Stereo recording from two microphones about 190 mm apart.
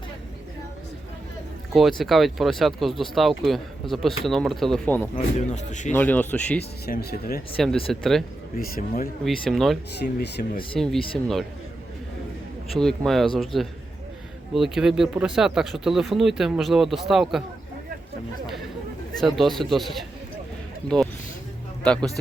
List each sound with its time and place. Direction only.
1.7 s speech: centre (ahead or behind)
5.1 s speech: 40° left (ahead or behind)
5.9 s speech: 10° left (ahead or behind)
6.8 s speech: 55° left (ahead or behind)
7.5 s speech: centre (ahead or behind)
8.5 s speech: 50° left (ahead or behind)
9.2 s speech: centre (ahead or behind)
10.0 s speech: 55° left (ahead or behind)
12.7 s speech: 5° left (ahead or behind)
19.2 s speech: centre (ahead or behind)